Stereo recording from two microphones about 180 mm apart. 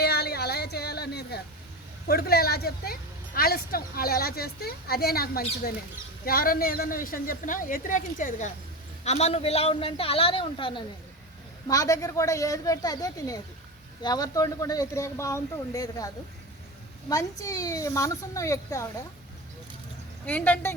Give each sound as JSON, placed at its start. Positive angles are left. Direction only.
{"t": 0.0, "sound": "a sound", "side_deg": 60}
{"t": 2.0, "sound": "a man's voice", "side_deg": 60}
{"t": 17.1, "sound": "a woman's voice", "side_deg": 20}
{"t": 20.2, "sound": "a woman's voice", "side_deg": 10}